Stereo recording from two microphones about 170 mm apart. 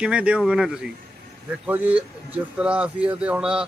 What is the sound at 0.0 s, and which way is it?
Speech, 5° right (ahead or behind).